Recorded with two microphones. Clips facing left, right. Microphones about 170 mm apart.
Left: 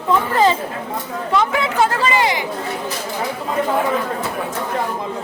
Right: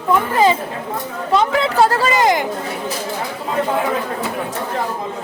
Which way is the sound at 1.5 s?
35° right (ahead or behind).